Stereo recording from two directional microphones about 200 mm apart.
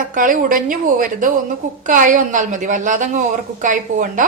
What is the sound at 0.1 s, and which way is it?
A woman's voice, 40° right (ahead or behind).